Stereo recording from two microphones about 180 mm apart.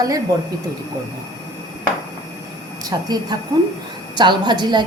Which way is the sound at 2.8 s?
20° right (ahead or behind).